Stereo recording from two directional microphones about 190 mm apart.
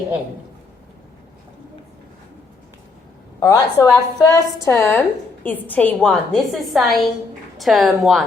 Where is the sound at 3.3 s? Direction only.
15° left (ahead or behind); by 8.2 s centre (ahead or behind).